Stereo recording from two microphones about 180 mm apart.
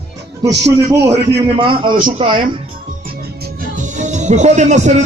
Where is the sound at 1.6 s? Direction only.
30° right (ahead or behind).